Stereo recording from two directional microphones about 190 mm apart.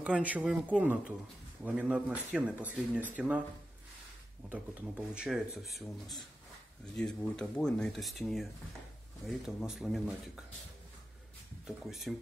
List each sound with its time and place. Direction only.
0.0 s speech: 5° right (ahead or behind)
4.5 s speech: 5° right (ahead or behind)
9.6 s speech: centre (ahead or behind)
11.6 s speech: centre (ahead or behind)